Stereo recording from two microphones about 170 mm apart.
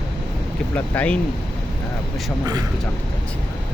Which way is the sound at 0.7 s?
10° left (ahead or behind).